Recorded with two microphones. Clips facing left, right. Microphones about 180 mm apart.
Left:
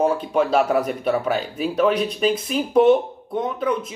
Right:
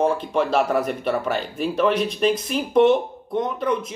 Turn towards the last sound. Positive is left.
turn(degrees=5)  # may be behind; listen again after turning